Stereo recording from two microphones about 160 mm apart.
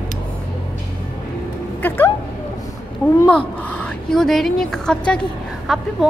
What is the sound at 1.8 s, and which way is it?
Speech, 10° left (ahead or behind).